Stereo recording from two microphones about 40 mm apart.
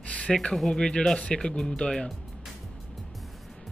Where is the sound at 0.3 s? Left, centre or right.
Centre.